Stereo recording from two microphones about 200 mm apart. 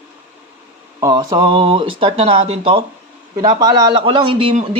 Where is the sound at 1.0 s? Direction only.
20° right (ahead or behind).